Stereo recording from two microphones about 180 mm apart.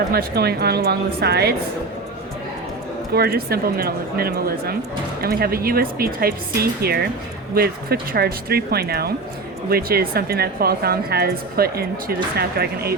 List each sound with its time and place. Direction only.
0.1 s speech: 60° right (ahead or behind)
3.1 s speech: 60° right (ahead or behind)